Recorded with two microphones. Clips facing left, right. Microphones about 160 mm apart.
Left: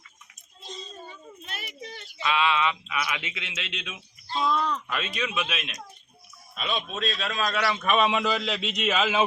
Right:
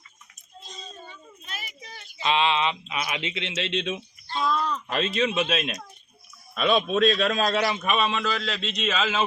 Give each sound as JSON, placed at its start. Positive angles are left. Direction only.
{"t": 1.5, "sound": "a sound", "side_deg": 65}
{"t": 2.2, "sound": "speech", "side_deg": -25}
{"t": 4.4, "sound": "a sound", "side_deg": 15}
{"t": 4.9, "sound": "a man's voice", "side_deg": -30}
{"t": 6.5, "sound": "a man's voice", "side_deg": -65}
{"t": 7.4, "sound": "speech", "side_deg": -25}
{"t": 8.0, "sound": "a man's voice", "side_deg": 15}